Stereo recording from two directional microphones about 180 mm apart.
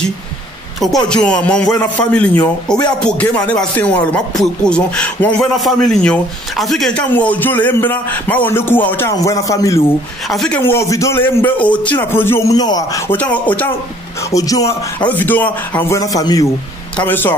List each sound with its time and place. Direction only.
0.7 s a man's voice: 5° left (ahead or behind); by 9.8 s 20° left (ahead or behind)
10.3 s a man's voice: 5° left (ahead or behind)
10.6 s speech: 15° left (ahead or behind)
14.3 s speech: 20° left (ahead or behind)